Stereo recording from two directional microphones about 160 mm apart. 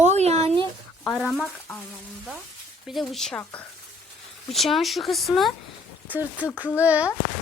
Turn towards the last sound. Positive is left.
turn(degrees=-10)  # may be behind; listen again after turning